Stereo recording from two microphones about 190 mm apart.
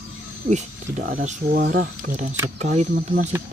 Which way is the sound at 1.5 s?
55° right (ahead or behind).